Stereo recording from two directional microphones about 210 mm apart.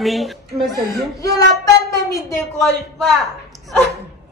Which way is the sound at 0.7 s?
15° left (ahead or behind).